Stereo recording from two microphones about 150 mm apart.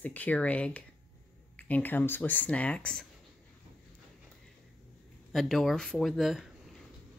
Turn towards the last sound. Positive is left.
turn(degrees=0)  # may be behind; listen again after turning